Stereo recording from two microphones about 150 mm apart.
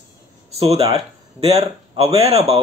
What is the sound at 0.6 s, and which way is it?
A man's voice, 40° right (ahead or behind).